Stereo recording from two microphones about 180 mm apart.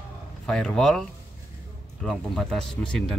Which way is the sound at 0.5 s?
5° left (ahead or behind).